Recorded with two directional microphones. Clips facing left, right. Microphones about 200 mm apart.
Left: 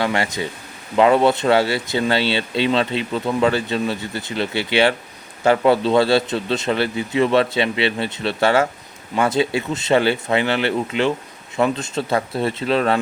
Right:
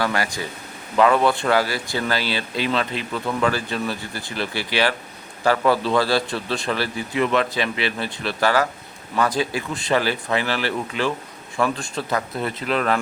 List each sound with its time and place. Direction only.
0.0 s speech: 25° left (ahead or behind)